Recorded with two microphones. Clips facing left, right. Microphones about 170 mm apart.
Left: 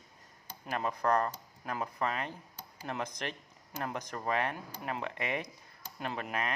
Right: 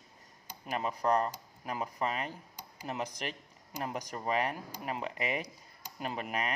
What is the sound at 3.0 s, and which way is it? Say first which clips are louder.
Speech: even; 10° right (ahead or behind).